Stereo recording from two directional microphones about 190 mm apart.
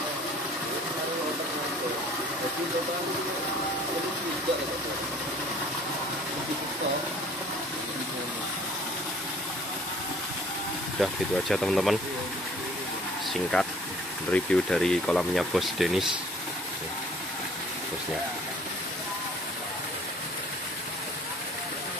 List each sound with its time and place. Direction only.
11.0 s speech: centre (ahead or behind)
13.3 s speech: 5° left (ahead or behind)